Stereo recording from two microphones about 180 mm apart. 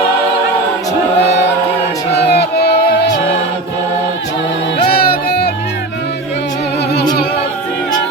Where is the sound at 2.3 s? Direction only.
65° left (ahead or behind).